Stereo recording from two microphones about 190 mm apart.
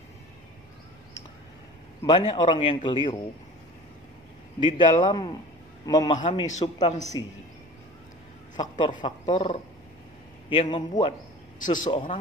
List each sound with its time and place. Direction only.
2.0 s speech: 25° left (ahead or behind)
4.6 s speech: 25° left (ahead or behind)
6.4 s speech: 40° left (ahead or behind)
7.2 s speech: 20° left (ahead or behind)
8.5 s speech: 25° left (ahead or behind)
11.6 s a man's voice: 40° left (ahead or behind)
11.9 s speech: 25° left (ahead or behind)